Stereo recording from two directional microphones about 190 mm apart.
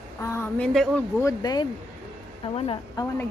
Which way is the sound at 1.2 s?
20° left (ahead or behind).